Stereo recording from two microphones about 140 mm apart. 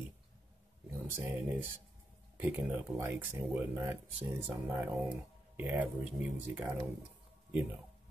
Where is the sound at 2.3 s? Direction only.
15° right (ahead or behind).